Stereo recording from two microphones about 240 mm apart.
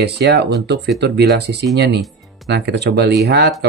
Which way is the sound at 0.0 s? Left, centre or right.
Right.